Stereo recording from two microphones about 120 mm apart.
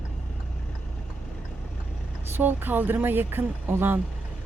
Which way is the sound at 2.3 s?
15° right (ahead or behind).